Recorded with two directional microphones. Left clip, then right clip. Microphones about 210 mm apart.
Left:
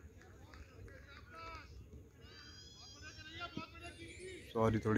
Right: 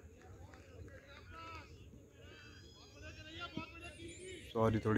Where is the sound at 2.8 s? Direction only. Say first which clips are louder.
Even; 15° left (ahead or behind).